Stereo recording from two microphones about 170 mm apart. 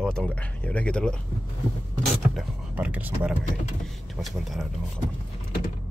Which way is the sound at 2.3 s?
10° right (ahead or behind).